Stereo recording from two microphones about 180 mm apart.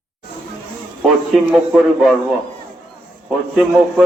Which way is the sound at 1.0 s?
Centre (ahead or behind).